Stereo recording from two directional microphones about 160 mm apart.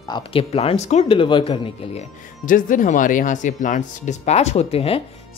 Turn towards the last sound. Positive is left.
turn(degrees=35)  # may be behind; listen again after turning